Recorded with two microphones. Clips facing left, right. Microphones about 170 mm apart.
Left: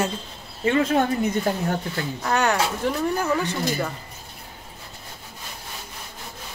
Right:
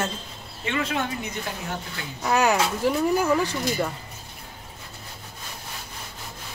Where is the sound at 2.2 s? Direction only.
5° right (ahead or behind).